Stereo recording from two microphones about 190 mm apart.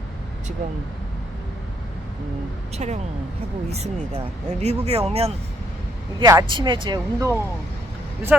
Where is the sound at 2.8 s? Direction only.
35° right (ahead or behind).